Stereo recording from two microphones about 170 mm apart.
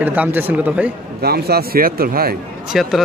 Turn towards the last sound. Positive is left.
turn(degrees=0)  # may be behind; listen again after turning